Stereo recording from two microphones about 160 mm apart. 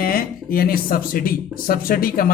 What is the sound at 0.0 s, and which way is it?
Speech, 65° left (ahead or behind).